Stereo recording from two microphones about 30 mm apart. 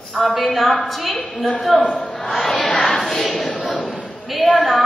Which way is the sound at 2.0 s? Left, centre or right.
Centre.